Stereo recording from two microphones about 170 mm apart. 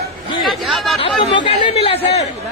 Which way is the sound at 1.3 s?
35° left (ahead or behind).